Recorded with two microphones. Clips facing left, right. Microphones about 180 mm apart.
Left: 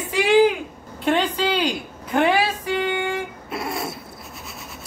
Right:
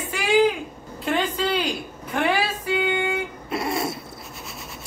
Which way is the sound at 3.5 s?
Centre (ahead or behind).